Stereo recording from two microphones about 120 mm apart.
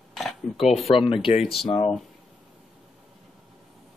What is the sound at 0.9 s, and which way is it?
Speech, 45° left (ahead or behind).